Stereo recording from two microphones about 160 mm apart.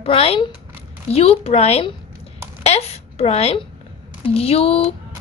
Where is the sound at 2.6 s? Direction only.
40° left (ahead or behind).